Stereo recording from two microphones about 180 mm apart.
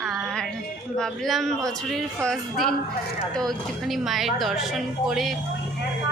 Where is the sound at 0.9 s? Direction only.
Centre (ahead or behind).